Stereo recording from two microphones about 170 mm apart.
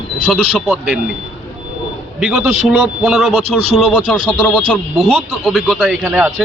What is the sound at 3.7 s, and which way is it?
Speech, 5° left (ahead or behind).